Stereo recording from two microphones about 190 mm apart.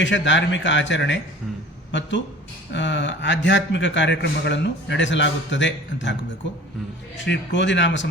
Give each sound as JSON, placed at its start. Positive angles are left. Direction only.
{"t": 0.0, "sound": "a man's voice", "side_deg": 75}
{"t": 7.3, "sound": "a man's voice", "side_deg": 70}